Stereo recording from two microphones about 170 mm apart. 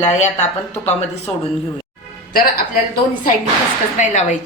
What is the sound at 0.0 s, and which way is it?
Speech, 45° left (ahead or behind).